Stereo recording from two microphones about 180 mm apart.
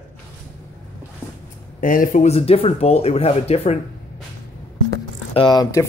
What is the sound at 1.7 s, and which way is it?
Speech, 50° left (ahead or behind).